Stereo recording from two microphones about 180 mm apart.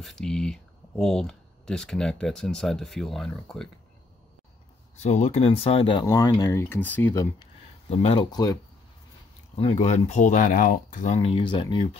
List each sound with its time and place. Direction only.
0.0 s speech: 5° left (ahead or behind)
4.9 s speech: 40° left (ahead or behind); by 7.2 s 10° left (ahead or behind)
7.9 s speech: 35° left (ahead or behind)
8.3 s speech: 20° left (ahead or behind)
9.6 s speech: 40° left (ahead or behind)
11.1 s speech: 30° left (ahead or behind)